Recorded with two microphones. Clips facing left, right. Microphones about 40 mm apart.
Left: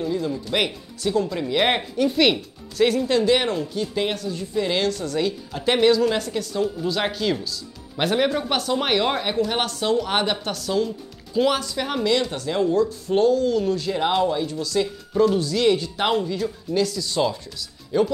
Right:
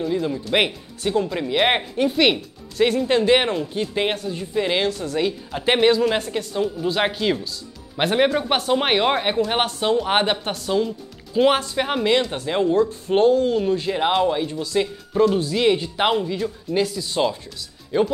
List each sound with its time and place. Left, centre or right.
0.1 s speech: right
2.0 s speech: centre
3.1 s speech: right
11.4 s speech: right; by 18.0 s centre